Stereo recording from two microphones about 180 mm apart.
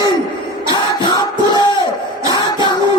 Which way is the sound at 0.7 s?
25° left (ahead or behind).